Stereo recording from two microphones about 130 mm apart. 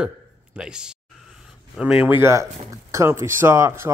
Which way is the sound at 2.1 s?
20° right (ahead or behind).